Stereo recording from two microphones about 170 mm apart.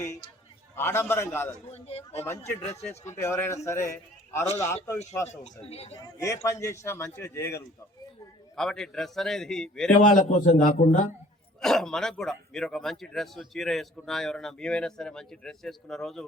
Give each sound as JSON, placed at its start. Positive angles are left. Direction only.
{"t": 0.8, "sound": "a man's voice", "side_deg": 15}
{"t": 1.7, "sound": "speech", "side_deg": 40}
{"t": 2.1, "sound": "a man's voice", "side_deg": 15}
{"t": 5.3, "sound": "speech", "side_deg": 40}
{"t": 6.0, "sound": "a man's voice", "side_deg": 20}
{"t": 8.5, "sound": "speech", "side_deg": 0}
{"t": 10.1, "sound": "a man's voice", "side_deg": 50}
{"t": 11.6, "sound": "speech", "side_deg": 0}